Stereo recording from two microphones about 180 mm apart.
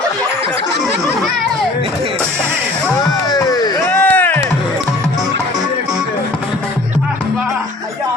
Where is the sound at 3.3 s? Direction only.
20° left (ahead or behind).